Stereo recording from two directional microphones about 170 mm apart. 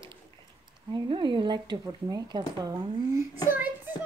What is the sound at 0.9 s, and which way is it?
A woman's voice, 30° right (ahead or behind).